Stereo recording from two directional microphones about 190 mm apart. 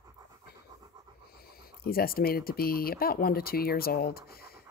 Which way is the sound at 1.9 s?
50° left (ahead or behind).